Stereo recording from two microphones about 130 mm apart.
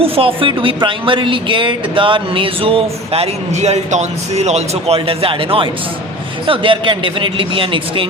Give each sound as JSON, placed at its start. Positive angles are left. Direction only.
{"t": 0.0, "sound": "speech", "side_deg": -45}